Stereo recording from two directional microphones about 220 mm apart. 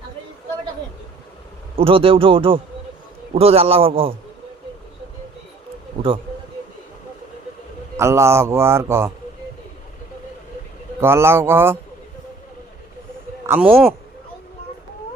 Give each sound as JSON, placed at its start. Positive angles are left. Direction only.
{"t": 1.7, "sound": "speech", "side_deg": -25}
{"t": 7.9, "sound": "a man's voice", "side_deg": -10}
{"t": 11.0, "sound": "a man's voice", "side_deg": -10}
{"t": 13.5, "sound": "speech", "side_deg": -5}